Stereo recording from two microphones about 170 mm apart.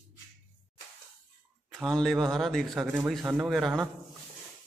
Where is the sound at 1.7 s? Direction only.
5° left (ahead or behind).